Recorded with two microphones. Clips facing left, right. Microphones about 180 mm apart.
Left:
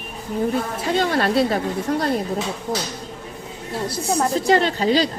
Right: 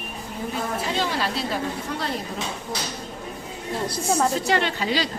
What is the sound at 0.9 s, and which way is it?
A woman's voice, 55° left (ahead or behind).